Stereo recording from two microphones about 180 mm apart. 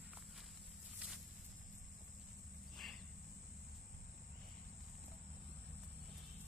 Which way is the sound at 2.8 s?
Centre (ahead or behind).